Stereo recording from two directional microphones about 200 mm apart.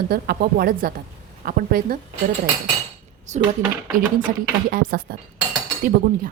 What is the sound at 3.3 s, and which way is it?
Speech, 35° right (ahead or behind).